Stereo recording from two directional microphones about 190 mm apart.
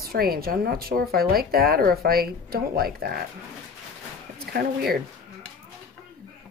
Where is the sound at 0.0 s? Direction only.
55° right (ahead or behind).